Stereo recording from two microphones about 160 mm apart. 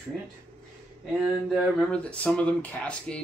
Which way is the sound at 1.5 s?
5° left (ahead or behind).